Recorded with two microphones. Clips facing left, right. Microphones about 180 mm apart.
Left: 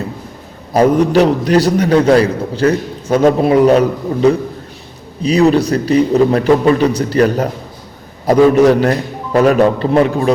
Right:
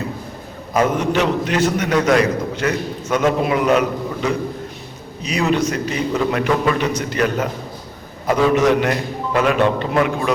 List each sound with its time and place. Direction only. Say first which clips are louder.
0.7 s a man's voice: left 7 dB; 35° left (ahead or behind)